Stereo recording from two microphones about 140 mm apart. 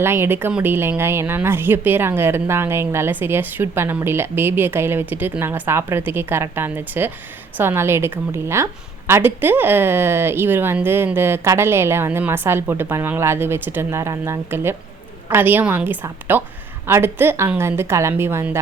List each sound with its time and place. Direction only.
0.0 s a woman's voice: 15° right (ahead or behind)